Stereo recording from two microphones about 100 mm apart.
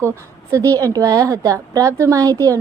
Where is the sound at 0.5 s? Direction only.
30° right (ahead or behind).